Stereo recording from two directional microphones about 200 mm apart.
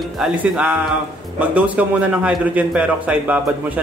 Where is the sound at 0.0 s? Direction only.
5° right (ahead or behind).